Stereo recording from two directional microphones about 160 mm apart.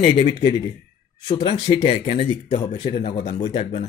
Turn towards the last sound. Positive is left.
turn(degrees=35)  # may be behind; listen again after turning